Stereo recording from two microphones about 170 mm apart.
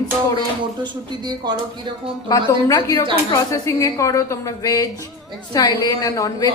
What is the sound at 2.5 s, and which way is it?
Speech, 20° left (ahead or behind).